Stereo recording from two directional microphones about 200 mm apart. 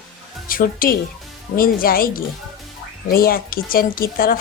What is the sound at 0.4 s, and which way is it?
Speech, 45° left (ahead or behind).